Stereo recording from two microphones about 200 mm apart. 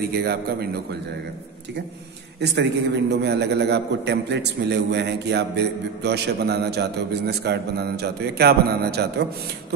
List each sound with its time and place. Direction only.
0.2 s a man's voice: 55° right (ahead or behind)
2.4 s a man's voice: 55° right (ahead or behind)